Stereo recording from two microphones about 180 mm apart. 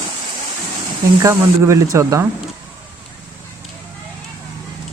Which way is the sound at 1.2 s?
15° right (ahead or behind).